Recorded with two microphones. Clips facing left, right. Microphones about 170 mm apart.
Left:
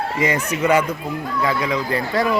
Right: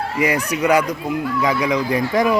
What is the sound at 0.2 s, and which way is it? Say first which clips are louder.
Speech: right 2 dB; 10° right (ahead or behind).